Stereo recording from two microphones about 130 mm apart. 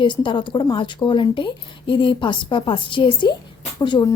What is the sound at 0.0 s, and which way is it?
A woman's voice, 40° left (ahead or behind).